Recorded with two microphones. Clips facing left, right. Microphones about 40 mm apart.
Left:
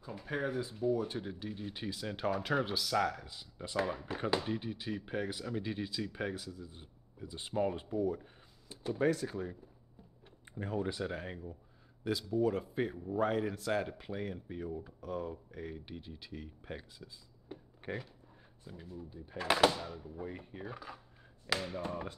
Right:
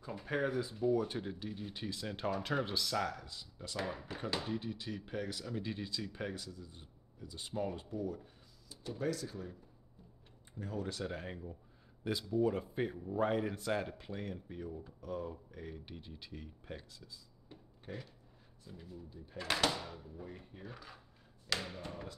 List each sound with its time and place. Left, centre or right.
0.0 s speech: centre; by 3.8 s left
3.8 s speech: centre; by 9.6 s left
10.6 s speech: left
10.9 s speech: centre
16.6 s speech: centre
17.9 s speech: left
18.7 s speech: centre
19.7 s speech: centre
20.2 s speech: left
20.7 s speech: centre